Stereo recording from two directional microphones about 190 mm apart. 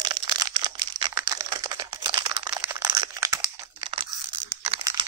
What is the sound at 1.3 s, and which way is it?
Computer keyboard, 20° right (ahead or behind).